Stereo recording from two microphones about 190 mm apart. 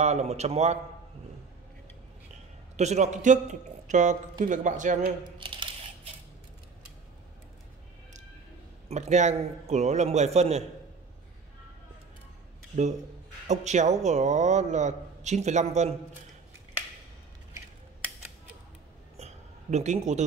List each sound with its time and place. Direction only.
0.0 s a man's voice: 35° right (ahead or behind)
2.7 s a man's voice: 35° right (ahead or behind)
8.8 s a man's voice: 35° right (ahead or behind)
13.5 s a man's voice: 40° right (ahead or behind)
19.1 s a sound: 35° right (ahead or behind)